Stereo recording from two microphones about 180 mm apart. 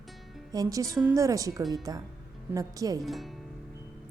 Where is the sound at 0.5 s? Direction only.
20° right (ahead or behind).